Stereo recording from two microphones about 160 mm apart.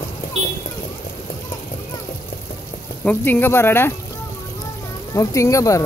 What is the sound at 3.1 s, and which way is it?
Speech, 10° left (ahead or behind).